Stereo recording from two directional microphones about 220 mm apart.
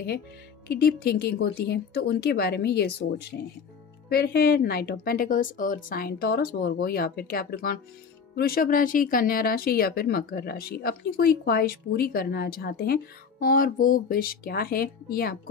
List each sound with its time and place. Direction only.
0.7 s speech: 45° left (ahead or behind)